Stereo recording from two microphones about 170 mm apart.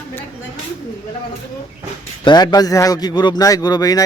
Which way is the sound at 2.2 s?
25° left (ahead or behind).